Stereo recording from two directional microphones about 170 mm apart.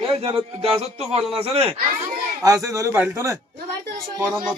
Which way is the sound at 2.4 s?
20° right (ahead or behind).